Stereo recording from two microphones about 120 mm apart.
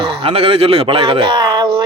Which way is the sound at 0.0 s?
50° right (ahead or behind).